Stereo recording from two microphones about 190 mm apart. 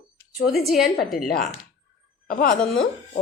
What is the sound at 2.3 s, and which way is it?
Speech, 50° left (ahead or behind).